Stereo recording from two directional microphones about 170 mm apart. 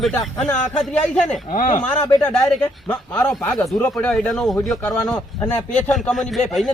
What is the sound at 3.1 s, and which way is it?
A man's voice, 10° left (ahead or behind).